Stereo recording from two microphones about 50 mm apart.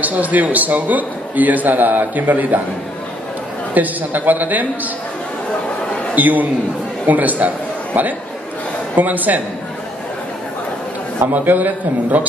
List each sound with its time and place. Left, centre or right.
0.0 s a man's voice: right
3.7 s a man's voice: right
6.1 s a man's voice: right
11.3 s a man's voice: right